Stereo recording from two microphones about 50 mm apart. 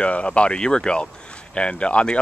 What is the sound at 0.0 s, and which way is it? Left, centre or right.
Speech, left.